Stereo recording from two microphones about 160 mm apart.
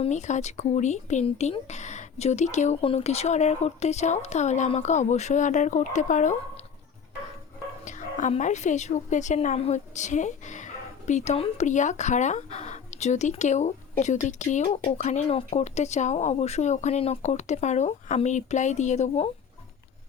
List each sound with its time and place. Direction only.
0.0 s speech: 45° left (ahead or behind)
7.9 s speech: 50° left (ahead or behind)